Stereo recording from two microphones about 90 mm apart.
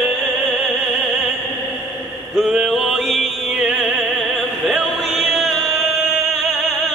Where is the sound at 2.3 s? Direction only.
5° right (ahead or behind).